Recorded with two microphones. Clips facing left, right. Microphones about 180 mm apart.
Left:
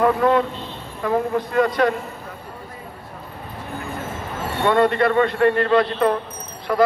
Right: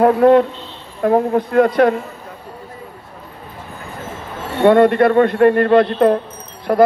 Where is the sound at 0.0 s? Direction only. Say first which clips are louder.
Right 7 dB; 55° right (ahead or behind).